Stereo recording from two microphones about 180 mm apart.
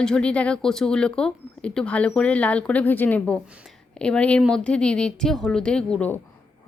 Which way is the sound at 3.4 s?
5° right (ahead or behind).